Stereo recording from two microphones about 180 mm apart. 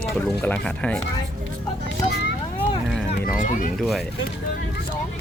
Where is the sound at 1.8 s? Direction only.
70° left (ahead or behind).